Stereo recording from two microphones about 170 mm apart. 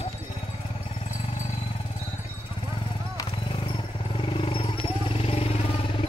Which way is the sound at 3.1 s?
30° left (ahead or behind).